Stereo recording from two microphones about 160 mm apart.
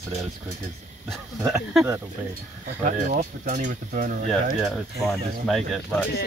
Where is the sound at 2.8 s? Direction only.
55° right (ahead or behind).